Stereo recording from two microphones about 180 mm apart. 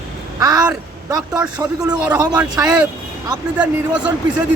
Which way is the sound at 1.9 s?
20° right (ahead or behind).